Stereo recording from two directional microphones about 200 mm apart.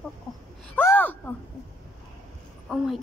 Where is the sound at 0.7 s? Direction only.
10° left (ahead or behind).